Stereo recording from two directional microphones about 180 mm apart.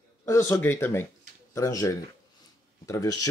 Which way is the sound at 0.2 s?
15° left (ahead or behind).